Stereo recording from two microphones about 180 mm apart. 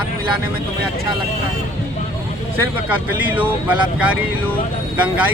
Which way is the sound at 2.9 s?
10° right (ahead or behind).